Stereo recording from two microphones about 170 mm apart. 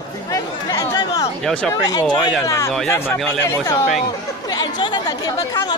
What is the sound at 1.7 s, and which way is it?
Speech, 20° left (ahead or behind).